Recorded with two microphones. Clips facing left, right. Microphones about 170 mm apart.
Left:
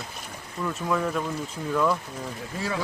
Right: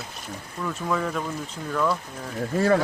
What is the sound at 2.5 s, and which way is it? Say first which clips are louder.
Speech: right 10 dB; 55° right (ahead or behind).